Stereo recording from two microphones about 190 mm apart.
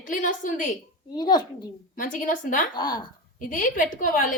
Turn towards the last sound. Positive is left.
turn(degrees=45)  # may be behind; listen again after turning